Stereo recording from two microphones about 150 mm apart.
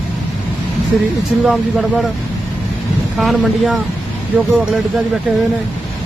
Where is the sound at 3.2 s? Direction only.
Centre (ahead or behind).